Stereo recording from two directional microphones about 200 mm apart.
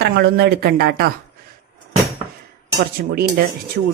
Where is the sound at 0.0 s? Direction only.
55° right (ahead or behind).